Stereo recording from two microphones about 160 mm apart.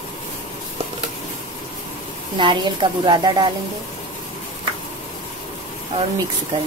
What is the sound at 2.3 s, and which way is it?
A woman's voice, 30° right (ahead or behind).